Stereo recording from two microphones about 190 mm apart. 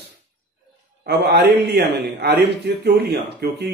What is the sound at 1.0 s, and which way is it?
Speech, 55° right (ahead or behind).